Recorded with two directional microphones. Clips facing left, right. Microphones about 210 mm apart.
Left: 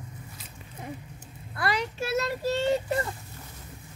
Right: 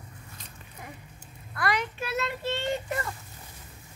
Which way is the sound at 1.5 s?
25° left (ahead or behind).